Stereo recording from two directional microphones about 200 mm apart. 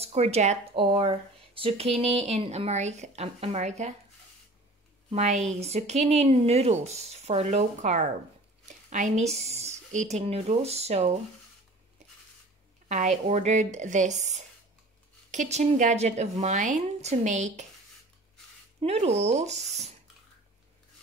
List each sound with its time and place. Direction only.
0.0 s speech: 30° right (ahead or behind)
5.1 s a woman's voice: 35° right (ahead or behind)
12.8 s speech: 35° right (ahead or behind)
18.8 s speech: 30° right (ahead or behind)